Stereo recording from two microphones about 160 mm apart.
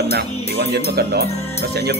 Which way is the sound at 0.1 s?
90° right.